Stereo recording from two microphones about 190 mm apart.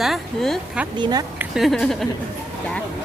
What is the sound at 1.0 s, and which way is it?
Speech, 20° right (ahead or behind).